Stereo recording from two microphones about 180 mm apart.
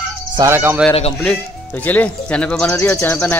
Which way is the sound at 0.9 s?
30° left (ahead or behind).